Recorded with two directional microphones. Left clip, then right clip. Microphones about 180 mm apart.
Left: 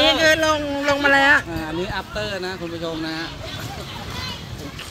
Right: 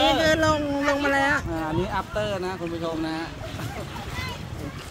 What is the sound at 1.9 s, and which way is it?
Speech, 70° right (ahead or behind).